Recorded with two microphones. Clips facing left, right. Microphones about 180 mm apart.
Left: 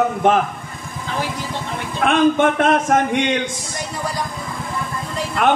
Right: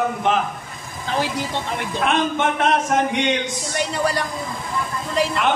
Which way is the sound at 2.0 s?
50° left (ahead or behind).